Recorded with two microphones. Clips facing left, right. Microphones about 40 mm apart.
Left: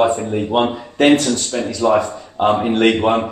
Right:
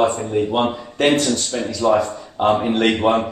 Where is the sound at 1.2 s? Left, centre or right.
Left.